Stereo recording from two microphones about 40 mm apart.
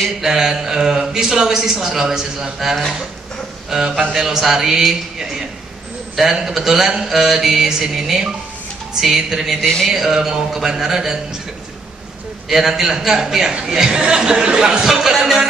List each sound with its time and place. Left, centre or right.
0.2 s speech: centre
3.7 s speech: centre
6.1 s speech: centre
12.4 s speech: centre